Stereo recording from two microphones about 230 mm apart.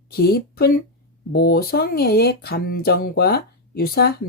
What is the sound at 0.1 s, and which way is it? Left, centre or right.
Speech, left.